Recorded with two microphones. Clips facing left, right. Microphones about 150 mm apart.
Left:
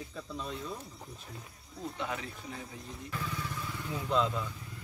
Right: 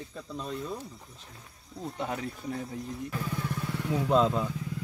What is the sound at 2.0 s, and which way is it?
Speech, 40° right (ahead or behind).